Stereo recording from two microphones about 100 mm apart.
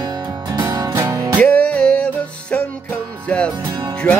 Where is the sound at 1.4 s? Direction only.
15° left (ahead or behind).